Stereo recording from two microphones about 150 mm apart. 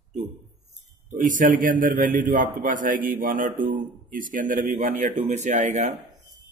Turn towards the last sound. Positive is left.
turn(degrees=-50)  # may be behind; listen again after turning